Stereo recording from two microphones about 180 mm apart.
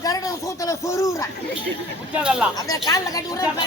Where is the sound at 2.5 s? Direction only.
20° left (ahead or behind).